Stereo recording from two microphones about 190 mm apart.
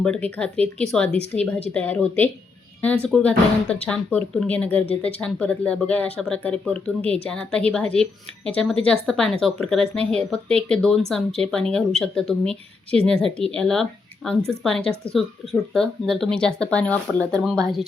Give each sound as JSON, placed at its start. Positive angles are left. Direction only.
{"t": 0.0, "sound": "speech", "side_deg": 5}